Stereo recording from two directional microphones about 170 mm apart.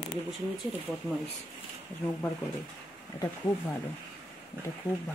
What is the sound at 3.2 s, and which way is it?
Speech, 20° left (ahead or behind).